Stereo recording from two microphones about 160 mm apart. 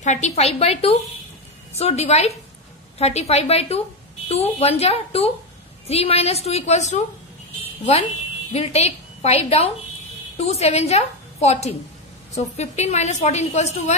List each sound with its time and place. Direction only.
0.0 s a woman's voice: 45° left (ahead or behind)
8.5 s a woman's voice: 40° left (ahead or behind)